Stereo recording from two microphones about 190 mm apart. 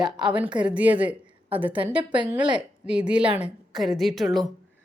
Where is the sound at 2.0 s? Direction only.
25° right (ahead or behind).